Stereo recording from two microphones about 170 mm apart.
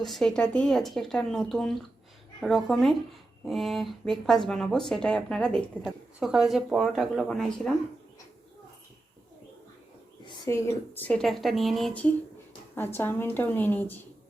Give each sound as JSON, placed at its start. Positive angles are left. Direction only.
{"t": 0.0, "sound": "speech", "side_deg": 0}
{"t": 10.2, "sound": "a woman's voice", "side_deg": 20}
{"t": 11.1, "sound": "speech", "side_deg": 0}
{"t": 12.7, "sound": "a woman's voice", "side_deg": 15}